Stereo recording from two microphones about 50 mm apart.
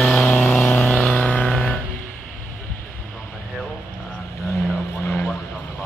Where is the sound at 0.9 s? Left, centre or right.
Left.